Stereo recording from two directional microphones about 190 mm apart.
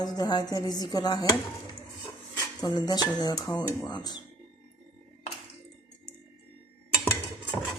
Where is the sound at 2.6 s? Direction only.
20° left (ahead or behind).